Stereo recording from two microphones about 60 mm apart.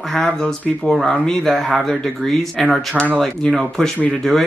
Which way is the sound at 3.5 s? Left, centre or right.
Centre.